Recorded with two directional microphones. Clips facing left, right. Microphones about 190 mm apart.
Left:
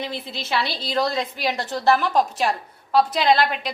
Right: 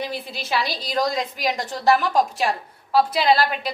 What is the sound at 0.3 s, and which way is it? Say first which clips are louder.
A woman's voice: left 1 dB; 15° right (ahead or behind).